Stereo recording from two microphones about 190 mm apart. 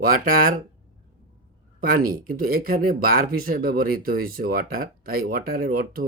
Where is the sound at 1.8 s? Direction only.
50° right (ahead or behind).